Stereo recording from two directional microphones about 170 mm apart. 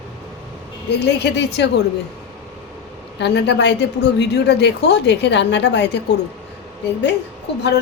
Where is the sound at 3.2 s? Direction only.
90° left.